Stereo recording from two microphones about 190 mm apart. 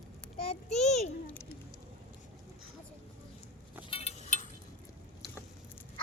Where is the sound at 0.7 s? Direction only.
35° left (ahead or behind).